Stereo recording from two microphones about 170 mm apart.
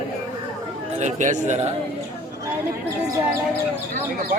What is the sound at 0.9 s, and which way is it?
Speech, 45° right (ahead or behind).